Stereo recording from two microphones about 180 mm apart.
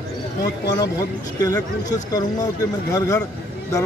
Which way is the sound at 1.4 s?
20° left (ahead or behind).